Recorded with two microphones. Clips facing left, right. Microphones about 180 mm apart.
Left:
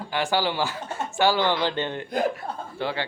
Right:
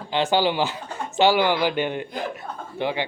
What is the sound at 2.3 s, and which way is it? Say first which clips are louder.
Chuckle: even; 20° right (ahead or behind).